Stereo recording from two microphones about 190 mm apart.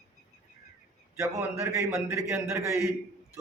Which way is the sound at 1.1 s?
15° right (ahead or behind).